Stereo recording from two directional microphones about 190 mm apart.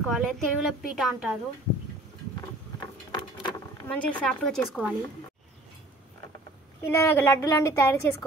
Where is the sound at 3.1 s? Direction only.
15° left (ahead or behind).